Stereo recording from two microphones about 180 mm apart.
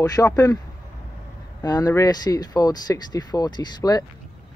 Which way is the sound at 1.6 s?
20° left (ahead or behind).